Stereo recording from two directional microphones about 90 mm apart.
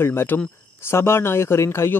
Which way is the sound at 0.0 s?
25° left (ahead or behind).